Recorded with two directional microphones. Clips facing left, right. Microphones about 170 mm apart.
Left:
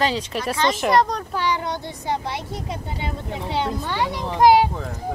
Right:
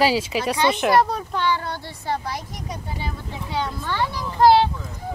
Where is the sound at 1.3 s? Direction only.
15° left (ahead or behind).